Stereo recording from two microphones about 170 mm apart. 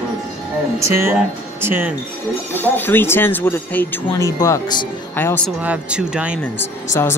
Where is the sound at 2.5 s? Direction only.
10° left (ahead or behind).